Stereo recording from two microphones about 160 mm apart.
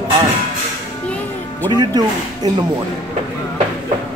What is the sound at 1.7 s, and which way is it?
Speech, 25° right (ahead or behind).